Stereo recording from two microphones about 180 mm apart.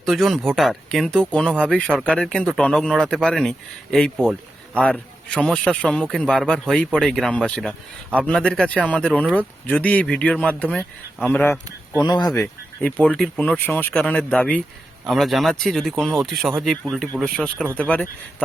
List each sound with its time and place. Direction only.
0.0 s a man's voice: centre (ahead or behind)
11.9 s speech: 25° left (ahead or behind)
12.3 s a man's voice: 10° left (ahead or behind)